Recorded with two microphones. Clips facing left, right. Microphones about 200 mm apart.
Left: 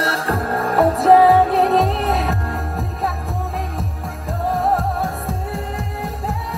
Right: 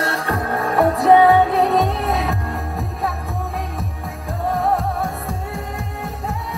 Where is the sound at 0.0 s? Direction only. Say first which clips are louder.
Left 1 dB; centre (ahead or behind).